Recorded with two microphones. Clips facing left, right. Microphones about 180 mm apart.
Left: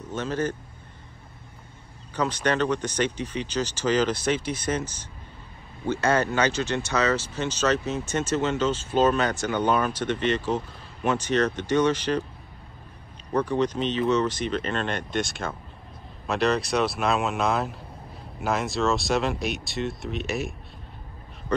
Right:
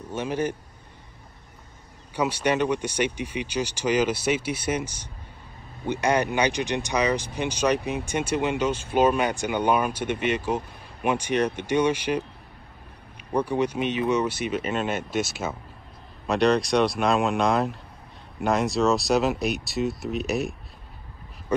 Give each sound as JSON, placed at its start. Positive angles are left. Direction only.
{"t": 0.0, "sound": "a man's voice", "side_deg": -10}
{"t": 2.1, "sound": "speech", "side_deg": -10}
{"t": 13.3, "sound": "speech", "side_deg": -10}